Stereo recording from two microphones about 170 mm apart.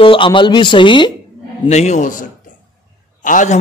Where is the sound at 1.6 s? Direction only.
40° left (ahead or behind).